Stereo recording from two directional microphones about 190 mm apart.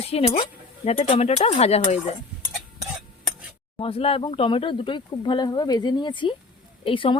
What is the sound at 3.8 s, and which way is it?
Speech, 30° left (ahead or behind).